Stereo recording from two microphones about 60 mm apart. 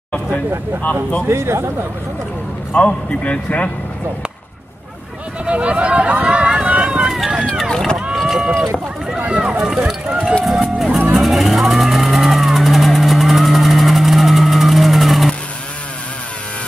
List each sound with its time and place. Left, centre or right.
1.2 s speech: right
2.7 s a man's voice: left
5.4 s run: centre
7.7 s run: centre
8.1 s run: centre
9.2 s speech: centre
9.6 s speech: centre
10.4 s music: centre
11.1 s vehicle: centre